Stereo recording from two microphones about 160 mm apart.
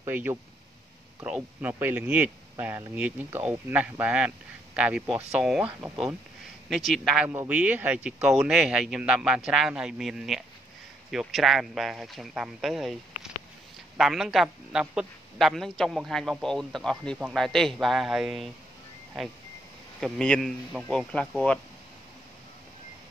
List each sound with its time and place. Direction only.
0.0 s a man's voice: 15° right (ahead or behind)
7.2 s a man's voice: 10° right (ahead or behind)
20.0 s a man's voice: 5° left (ahead or behind)